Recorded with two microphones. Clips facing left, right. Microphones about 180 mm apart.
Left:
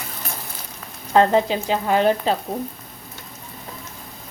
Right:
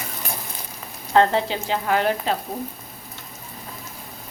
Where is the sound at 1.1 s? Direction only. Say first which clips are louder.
Left 2 dB; 15° left (ahead or behind).